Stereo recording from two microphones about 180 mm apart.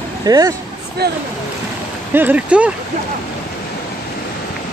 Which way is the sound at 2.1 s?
10° right (ahead or behind).